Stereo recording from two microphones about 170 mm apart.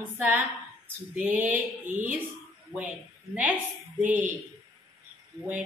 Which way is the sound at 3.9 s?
10° right (ahead or behind).